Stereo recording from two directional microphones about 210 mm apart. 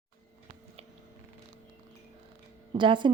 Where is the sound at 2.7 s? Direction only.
20° right (ahead or behind).